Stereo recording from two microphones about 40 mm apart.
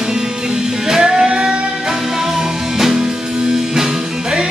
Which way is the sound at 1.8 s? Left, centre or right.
Centre.